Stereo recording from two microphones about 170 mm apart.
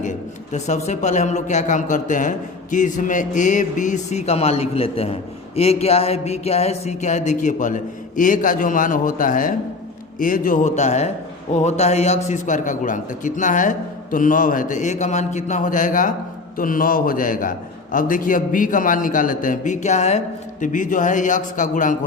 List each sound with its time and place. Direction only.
0.5 s a man's voice: 45° left (ahead or behind)